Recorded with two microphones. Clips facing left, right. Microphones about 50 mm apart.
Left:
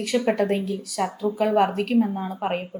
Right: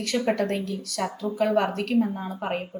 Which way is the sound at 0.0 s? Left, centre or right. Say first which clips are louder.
Left 3 dB; centre.